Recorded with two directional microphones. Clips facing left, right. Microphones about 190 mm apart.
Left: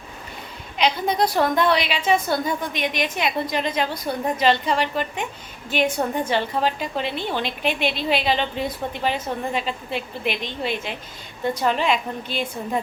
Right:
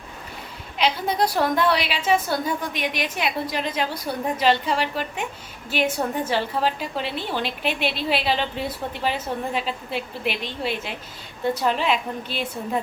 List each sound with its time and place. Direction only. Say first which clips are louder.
0.8 s a woman's voice: left 1 dB; 5° right (ahead or behind)